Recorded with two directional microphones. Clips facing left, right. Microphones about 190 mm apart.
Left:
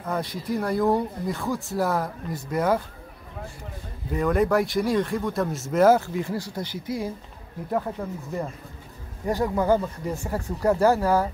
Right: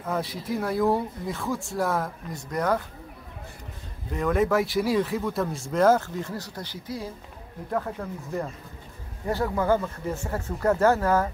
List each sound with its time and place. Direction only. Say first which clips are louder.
0.0 s speech: left 1 dB; centre (ahead or behind)
4.1 s speech: left 2 dB; centre (ahead or behind)